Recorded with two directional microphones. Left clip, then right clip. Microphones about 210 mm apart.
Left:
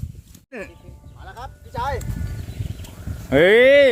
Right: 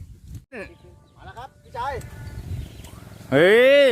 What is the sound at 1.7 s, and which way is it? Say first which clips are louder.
Speech: left 3 dB; 10° left (ahead or behind).